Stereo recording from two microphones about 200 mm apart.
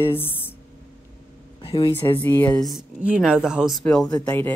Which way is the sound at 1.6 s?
25° left (ahead or behind).